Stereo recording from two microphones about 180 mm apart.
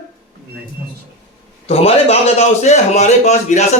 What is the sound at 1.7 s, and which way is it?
A man's voice, 35° left (ahead or behind).